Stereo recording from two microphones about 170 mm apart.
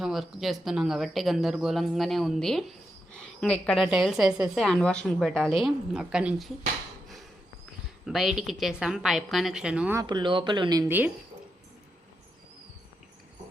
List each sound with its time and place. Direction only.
0.0 s a woman's voice: centre (ahead or behind)
8.0 s speech: centre (ahead or behind)
10.0 s speech: 25° right (ahead or behind)